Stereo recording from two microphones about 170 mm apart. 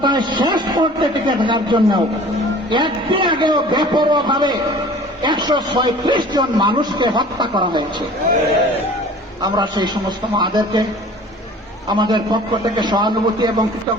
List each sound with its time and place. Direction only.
0.0 s a sound: 25° right (ahead or behind)
1.3 s a man's voice: 25° right (ahead or behind)
9.4 s a man's voice: 25° right (ahead or behind)
11.9 s a man's voice: 25° right (ahead or behind)